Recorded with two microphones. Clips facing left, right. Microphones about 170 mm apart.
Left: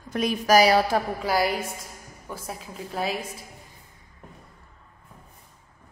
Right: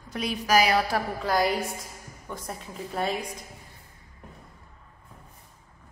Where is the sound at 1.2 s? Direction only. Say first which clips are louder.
Right 3 dB; centre (ahead or behind).